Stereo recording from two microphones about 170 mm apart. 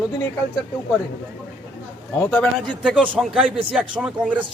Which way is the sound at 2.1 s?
10° left (ahead or behind).